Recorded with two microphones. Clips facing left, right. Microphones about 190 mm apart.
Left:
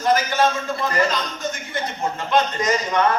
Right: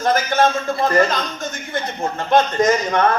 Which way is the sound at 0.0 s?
50° right (ahead or behind).